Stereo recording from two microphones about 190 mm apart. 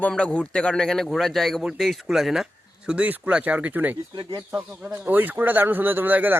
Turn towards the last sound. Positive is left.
turn(degrees=-10)  # may be behind; listen again after turning